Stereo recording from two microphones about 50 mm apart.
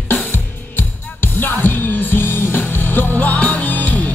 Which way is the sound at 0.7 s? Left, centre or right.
Left.